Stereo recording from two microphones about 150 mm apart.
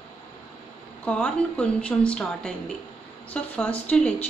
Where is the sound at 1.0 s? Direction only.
5° left (ahead or behind).